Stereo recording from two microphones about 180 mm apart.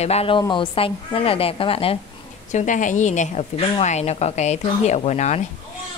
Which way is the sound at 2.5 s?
45° left (ahead or behind).